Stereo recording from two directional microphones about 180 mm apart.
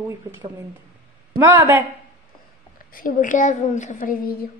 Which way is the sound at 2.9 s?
50° left (ahead or behind).